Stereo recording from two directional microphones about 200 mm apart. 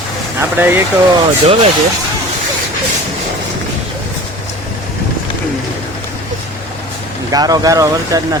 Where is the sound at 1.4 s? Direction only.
30° right (ahead or behind).